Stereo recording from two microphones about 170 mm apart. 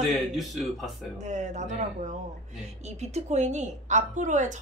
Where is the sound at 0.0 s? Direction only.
Centre (ahead or behind).